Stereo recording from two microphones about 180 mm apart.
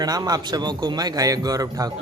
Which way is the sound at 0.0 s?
20° right (ahead or behind).